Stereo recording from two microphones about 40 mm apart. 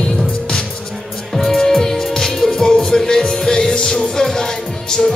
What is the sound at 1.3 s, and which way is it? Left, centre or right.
Music, centre.